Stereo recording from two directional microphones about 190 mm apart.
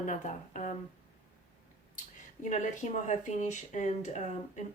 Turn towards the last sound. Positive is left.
turn(degrees=35)  # may be behind; listen again after turning